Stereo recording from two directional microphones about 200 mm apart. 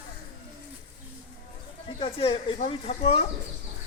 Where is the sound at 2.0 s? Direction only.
25° left (ahead or behind).